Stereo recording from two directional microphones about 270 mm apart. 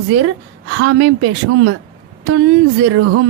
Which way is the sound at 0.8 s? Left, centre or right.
Right.